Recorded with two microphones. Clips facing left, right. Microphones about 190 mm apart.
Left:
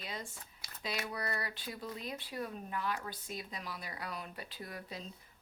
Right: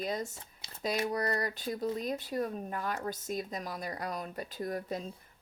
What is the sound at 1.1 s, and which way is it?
Speech, 45° right (ahead or behind).